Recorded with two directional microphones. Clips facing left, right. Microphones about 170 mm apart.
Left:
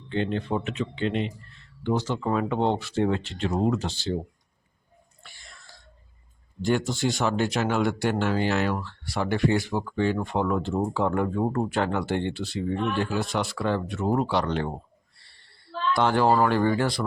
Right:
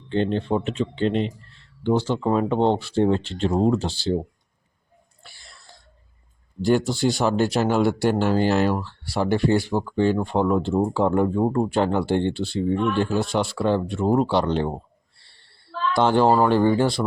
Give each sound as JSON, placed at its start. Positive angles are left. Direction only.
{"t": 0.1, "sound": "speech", "side_deg": -35}
{"t": 5.2, "sound": "whispering", "side_deg": -35}
{"t": 6.6, "sound": "speech", "side_deg": -35}
{"t": 15.2, "sound": "a sound", "side_deg": -30}
{"t": 16.0, "sound": "speech", "side_deg": -30}